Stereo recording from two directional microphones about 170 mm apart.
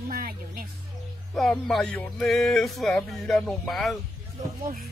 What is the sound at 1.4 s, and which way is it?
Speech, centre (ahead or behind).